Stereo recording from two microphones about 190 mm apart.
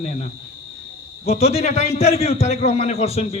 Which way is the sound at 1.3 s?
35° left (ahead or behind).